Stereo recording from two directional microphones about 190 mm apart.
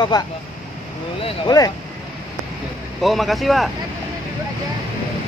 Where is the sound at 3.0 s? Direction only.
Centre (ahead or behind).